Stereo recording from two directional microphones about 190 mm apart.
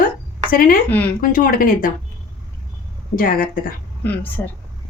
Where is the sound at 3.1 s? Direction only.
50° left (ahead or behind).